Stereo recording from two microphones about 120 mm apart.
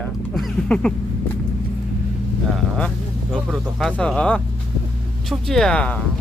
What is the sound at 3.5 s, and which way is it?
Speech, 5° left (ahead or behind).